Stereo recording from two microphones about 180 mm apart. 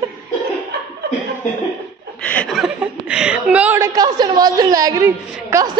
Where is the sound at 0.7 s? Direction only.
60° right (ahead or behind).